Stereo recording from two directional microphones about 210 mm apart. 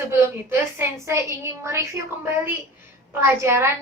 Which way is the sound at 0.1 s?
10° right (ahead or behind).